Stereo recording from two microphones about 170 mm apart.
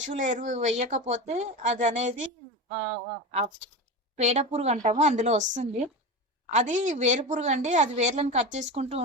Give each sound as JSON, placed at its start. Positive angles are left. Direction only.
{"t": 0.0, "sound": "speech", "side_deg": -45}
{"t": 4.2, "sound": "speech", "side_deg": -40}